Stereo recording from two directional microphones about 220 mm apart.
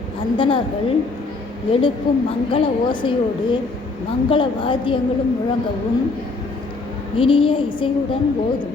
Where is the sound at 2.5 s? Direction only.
20° left (ahead or behind).